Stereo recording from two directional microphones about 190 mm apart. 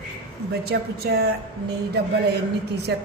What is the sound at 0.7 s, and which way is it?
Speech, 60° right (ahead or behind).